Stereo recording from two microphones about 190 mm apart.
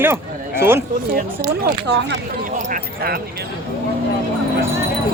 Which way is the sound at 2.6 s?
45° right (ahead or behind).